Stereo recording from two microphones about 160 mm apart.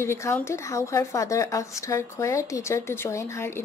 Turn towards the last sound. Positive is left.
turn(degrees=15)  # may be behind; listen again after turning